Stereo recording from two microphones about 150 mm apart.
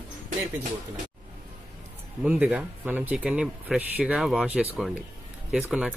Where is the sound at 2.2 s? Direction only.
10° right (ahead or behind).